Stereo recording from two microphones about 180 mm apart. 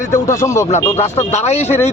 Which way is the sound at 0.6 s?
40° left (ahead or behind).